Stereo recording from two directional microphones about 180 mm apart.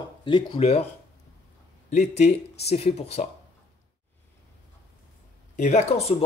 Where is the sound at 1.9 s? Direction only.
40° left (ahead or behind).